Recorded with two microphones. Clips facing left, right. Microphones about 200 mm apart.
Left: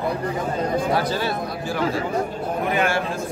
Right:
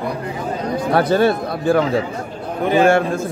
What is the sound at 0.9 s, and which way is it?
Speech, 55° right (ahead or behind).